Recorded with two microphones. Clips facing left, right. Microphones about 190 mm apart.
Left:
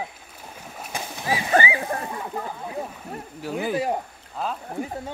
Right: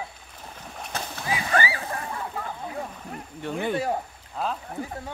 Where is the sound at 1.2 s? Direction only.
25° left (ahead or behind).